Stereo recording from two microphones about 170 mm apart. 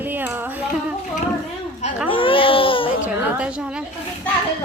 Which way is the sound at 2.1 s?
30° left (ahead or behind).